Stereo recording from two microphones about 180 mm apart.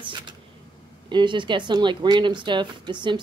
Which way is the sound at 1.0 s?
25° right (ahead or behind).